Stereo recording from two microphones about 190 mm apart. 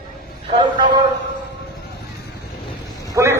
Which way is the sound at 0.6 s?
25° right (ahead or behind).